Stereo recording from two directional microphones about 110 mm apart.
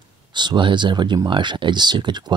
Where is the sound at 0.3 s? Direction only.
45° right (ahead or behind).